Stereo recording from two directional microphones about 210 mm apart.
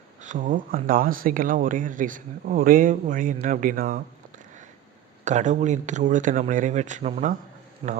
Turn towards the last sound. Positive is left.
turn(degrees=-25)  # may be behind; listen again after turning